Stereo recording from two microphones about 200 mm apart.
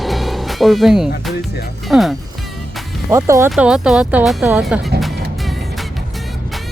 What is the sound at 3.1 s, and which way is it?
Speech, 15° right (ahead or behind).